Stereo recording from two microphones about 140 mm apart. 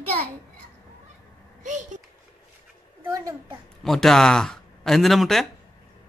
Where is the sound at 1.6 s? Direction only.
60° right (ahead or behind).